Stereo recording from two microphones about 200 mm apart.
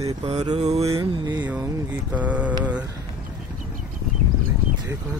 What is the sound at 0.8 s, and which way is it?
Mantra, 20° right (ahead or behind).